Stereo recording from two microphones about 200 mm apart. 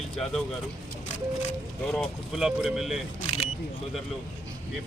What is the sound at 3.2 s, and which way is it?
Single-lens reflex camera, 30° left (ahead or behind).